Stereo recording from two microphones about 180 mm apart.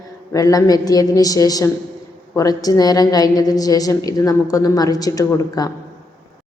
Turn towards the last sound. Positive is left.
turn(degrees=20)  # may be behind; listen again after turning